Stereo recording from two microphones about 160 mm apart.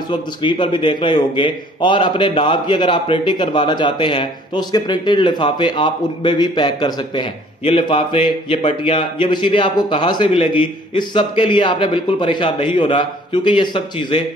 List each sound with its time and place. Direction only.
0.1 s a man's voice: 30° left (ahead or behind)